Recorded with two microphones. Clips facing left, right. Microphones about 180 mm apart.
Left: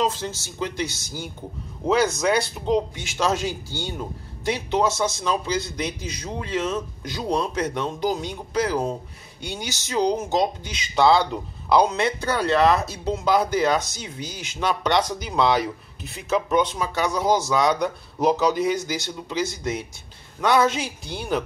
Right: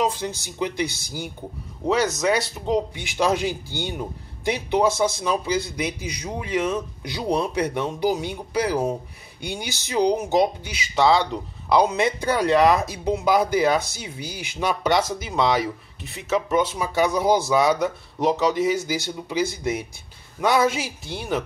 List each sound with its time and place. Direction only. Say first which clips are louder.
0.0 s a man's voice: right 1 dB; 15° right (ahead or behind)
1.9 s speech: left 1 dB; centre (ahead or behind)
3.0 s a man's voice: right 2 dB; 15° right (ahead or behind)